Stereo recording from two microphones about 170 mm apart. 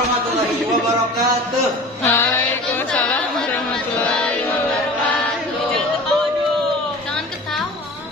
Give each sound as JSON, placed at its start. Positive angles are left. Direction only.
{"t": 2.0, "sound": "music", "side_deg": 15}
{"t": 2.9, "sound": "chatter", "side_deg": 5}
{"t": 4.1, "sound": "music", "side_deg": 5}